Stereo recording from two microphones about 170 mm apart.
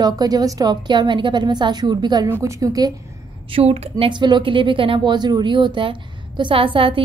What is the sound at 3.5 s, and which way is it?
Speech, 35° right (ahead or behind).